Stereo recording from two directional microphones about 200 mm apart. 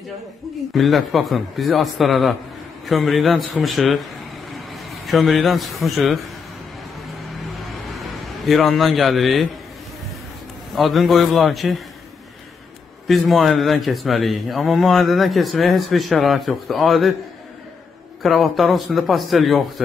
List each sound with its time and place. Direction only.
0.7 s a man's voice: centre (ahead or behind)
8.5 s speech: centre (ahead or behind)
10.7 s speech: centre (ahead or behind)
13.0 s speech: centre (ahead or behind)
18.2 s speech: centre (ahead or behind)